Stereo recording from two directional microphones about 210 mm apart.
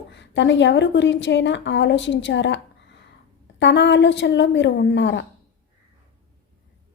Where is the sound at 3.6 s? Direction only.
55° left (ahead or behind).